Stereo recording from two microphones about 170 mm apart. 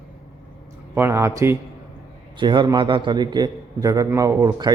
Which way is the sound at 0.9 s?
15° right (ahead or behind).